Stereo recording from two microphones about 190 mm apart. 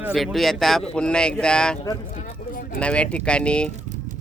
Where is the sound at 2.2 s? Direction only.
45° left (ahead or behind).